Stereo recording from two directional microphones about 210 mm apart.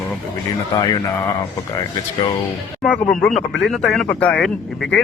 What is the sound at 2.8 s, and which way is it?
Speech, 5° left (ahead or behind).